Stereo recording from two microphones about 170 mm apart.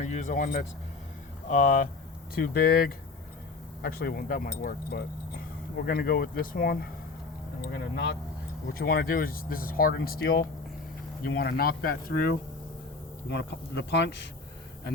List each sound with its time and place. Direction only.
0.0 s speech: 45° left (ahead or behind)
2.3 s speech: 60° left (ahead or behind)
7.6 s speech: 90° left
8.8 s speech: 60° left (ahead or behind)
13.3 s speech: 90° left